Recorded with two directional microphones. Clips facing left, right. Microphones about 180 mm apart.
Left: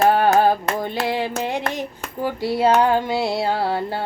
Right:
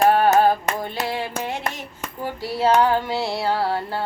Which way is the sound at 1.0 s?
15° left (ahead or behind).